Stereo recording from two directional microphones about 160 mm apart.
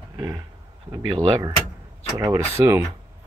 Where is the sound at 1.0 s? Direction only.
35° right (ahead or behind).